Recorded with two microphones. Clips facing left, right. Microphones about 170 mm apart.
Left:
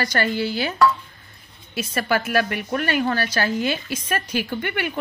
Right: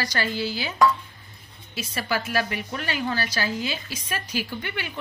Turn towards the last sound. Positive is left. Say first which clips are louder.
# left 7 dB
turn(degrees=60)  # may be behind; listen again after turning